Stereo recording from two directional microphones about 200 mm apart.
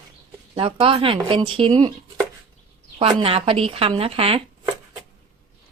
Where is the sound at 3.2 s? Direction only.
30° right (ahead or behind).